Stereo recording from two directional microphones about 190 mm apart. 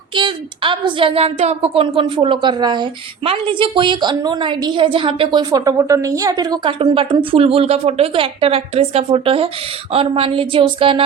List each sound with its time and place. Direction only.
0.1 s speech: 25° right (ahead or behind)